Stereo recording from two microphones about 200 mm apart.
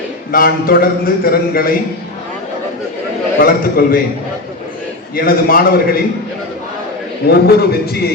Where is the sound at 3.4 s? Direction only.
45° left (ahead or behind).